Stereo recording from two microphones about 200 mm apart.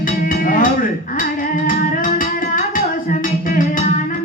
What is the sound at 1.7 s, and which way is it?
Music, 45° left (ahead or behind).